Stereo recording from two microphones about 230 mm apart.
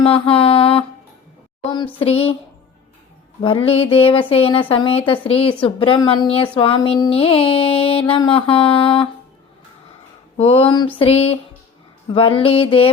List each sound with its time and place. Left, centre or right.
0.0 s mantra: left
2.0 s music: left
3.4 s music: left
10.3 s music: left